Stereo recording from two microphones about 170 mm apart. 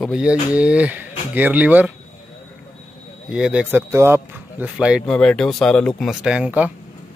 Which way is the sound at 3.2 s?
5° right (ahead or behind).